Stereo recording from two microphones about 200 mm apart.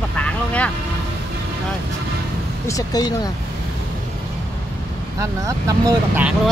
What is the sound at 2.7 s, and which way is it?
Speech, 20° left (ahead or behind).